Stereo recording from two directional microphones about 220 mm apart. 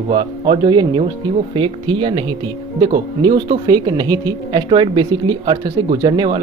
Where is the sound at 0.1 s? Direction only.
20° right (ahead or behind).